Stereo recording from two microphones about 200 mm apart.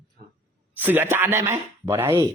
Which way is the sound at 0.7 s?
10° right (ahead or behind).